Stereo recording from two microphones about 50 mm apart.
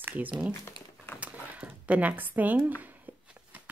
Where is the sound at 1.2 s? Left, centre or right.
Right.